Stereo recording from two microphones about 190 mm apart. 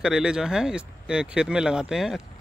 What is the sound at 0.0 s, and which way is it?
Speech, 5° right (ahead or behind).